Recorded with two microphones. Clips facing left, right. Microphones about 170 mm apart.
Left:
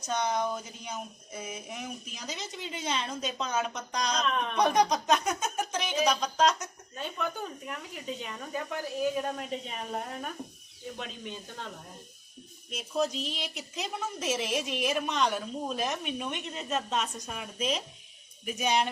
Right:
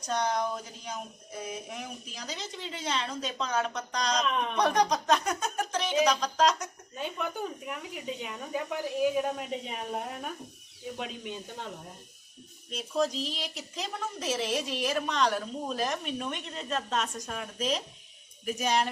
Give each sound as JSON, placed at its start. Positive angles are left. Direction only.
{"t": 0.0, "sound": "speech", "side_deg": 5}
{"t": 2.3, "sound": "speech", "side_deg": -35}
{"t": 2.8, "sound": "a woman's voice", "side_deg": 5}
{"t": 4.2, "sound": "speech", "side_deg": -10}
{"t": 4.5, "sound": "speech", "side_deg": 5}
{"t": 6.9, "sound": "speech", "side_deg": -10}
{"t": 13.1, "sound": "speech", "side_deg": -35}
{"t": 13.6, "sound": "a woman's voice", "side_deg": 5}